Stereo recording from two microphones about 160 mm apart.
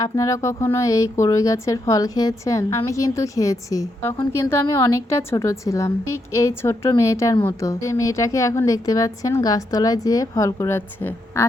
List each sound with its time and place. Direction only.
0.0 s a woman's voice: 20° left (ahead or behind)